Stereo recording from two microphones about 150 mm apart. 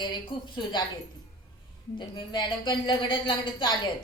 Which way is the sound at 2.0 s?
30° left (ahead or behind).